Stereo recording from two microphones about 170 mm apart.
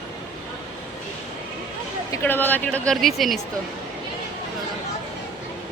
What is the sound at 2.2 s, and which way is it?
Speech, 10° left (ahead or behind).